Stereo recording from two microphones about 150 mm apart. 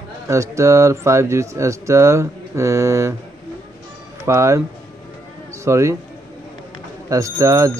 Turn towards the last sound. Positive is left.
turn(degrees=-20)  # may be behind; listen again after turning